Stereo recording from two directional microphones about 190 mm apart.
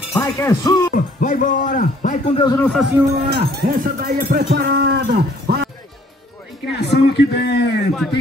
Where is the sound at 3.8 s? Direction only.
45° right (ahead or behind).